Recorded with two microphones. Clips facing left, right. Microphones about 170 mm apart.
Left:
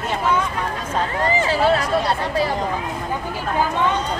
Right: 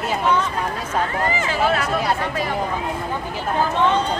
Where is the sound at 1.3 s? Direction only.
30° left (ahead or behind).